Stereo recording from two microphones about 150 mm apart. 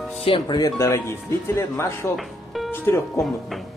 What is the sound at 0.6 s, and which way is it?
Speech, 20° left (ahead or behind).